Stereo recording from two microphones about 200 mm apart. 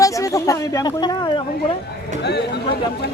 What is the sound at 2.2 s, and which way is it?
Speech, 55° left (ahead or behind).